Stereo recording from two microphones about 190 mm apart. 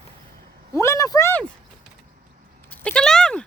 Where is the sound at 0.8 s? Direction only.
15° left (ahead or behind).